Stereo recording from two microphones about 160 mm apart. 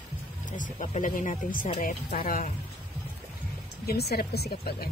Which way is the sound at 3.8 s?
75° left (ahead or behind).